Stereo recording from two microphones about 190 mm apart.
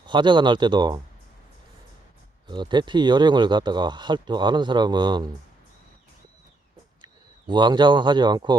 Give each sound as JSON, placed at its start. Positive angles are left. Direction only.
{"t": 0.0, "sound": "speech", "side_deg": -25}
{"t": 2.5, "sound": "speech", "side_deg": -25}
{"t": 7.0, "sound": "speech", "side_deg": -25}